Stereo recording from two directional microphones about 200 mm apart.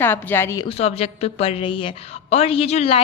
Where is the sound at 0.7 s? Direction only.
30° left (ahead or behind).